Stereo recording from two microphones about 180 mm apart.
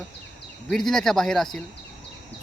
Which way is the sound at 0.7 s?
Centre (ahead or behind).